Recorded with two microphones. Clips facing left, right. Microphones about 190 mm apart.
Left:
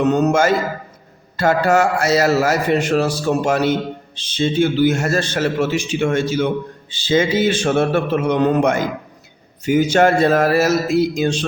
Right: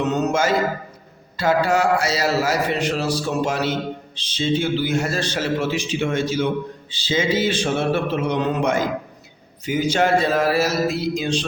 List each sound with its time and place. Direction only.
0.0 s speech: 50° left (ahead or behind)